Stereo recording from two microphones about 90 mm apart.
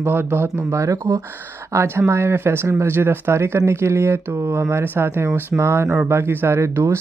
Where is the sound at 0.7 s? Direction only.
35° right (ahead or behind).